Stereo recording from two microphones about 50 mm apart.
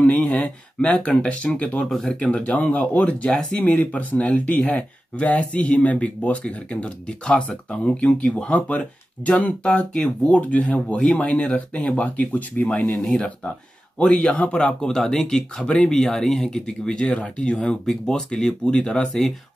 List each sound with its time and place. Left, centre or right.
0.0 s speech: left
3.3 s speech: centre
3.6 s speech: left
13.0 s speech: centre